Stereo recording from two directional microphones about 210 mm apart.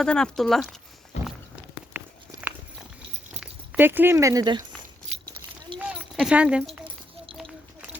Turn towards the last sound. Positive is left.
turn(degrees=-5)  # may be behind; listen again after turning